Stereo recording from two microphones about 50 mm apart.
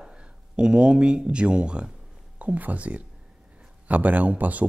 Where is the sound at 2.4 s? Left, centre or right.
Right.